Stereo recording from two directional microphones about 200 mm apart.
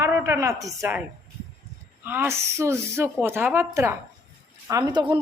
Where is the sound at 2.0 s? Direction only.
10° right (ahead or behind).